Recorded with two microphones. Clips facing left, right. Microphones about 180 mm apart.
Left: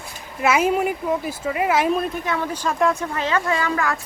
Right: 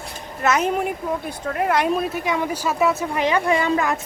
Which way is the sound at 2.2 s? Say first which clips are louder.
Right 1 dB; 15° right (ahead or behind).